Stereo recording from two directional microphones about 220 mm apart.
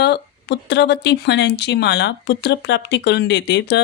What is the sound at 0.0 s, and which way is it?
Speech, 50° left (ahead or behind).